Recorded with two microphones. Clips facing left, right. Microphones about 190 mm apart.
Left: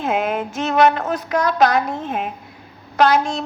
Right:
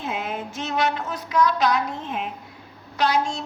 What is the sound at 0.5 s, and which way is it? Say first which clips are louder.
A woman's voice: left 9 dB; 50° left (ahead or behind).